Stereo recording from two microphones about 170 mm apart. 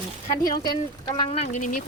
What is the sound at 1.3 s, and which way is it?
Speech, 40° left (ahead or behind).